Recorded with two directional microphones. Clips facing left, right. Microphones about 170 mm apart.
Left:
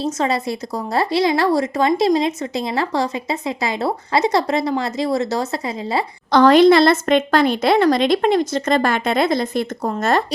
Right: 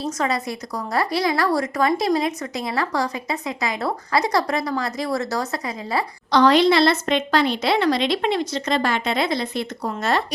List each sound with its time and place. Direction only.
0.0 s a woman's voice: 25° left (ahead or behind)
6.3 s a woman's voice: 50° left (ahead or behind)